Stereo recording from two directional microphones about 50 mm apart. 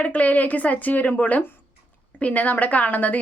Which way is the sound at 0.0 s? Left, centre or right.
Left.